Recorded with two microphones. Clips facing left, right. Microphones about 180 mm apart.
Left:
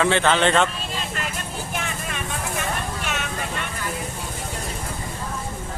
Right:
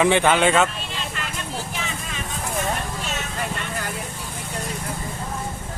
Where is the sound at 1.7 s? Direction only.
55° left (ahead or behind).